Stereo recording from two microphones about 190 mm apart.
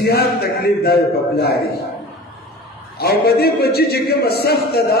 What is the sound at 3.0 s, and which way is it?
A man's voice, 55° left (ahead or behind).